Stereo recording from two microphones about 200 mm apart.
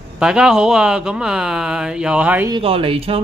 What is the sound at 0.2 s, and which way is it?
Speech, 5° right (ahead or behind).